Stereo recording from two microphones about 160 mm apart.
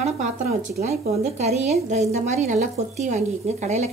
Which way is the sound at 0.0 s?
45° right (ahead or behind).